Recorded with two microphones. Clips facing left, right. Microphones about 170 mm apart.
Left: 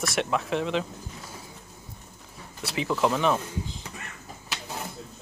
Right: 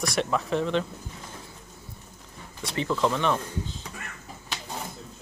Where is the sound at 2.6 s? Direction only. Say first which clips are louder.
Even; 5° left (ahead or behind).